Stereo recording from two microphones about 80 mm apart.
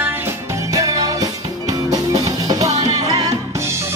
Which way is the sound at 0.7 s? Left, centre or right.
Right.